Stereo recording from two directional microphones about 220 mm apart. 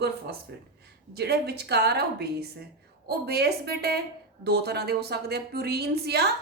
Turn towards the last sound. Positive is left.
turn(degrees=-45)  # may be behind; listen again after turning